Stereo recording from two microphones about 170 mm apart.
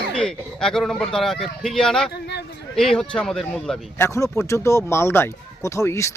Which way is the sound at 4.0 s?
15° left (ahead or behind).